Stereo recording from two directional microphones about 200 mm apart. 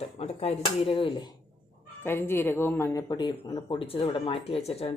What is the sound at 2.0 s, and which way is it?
Speech, 10° left (ahead or behind).